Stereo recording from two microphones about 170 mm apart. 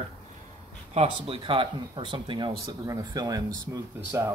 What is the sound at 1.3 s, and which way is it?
Speech, 30° right (ahead or behind).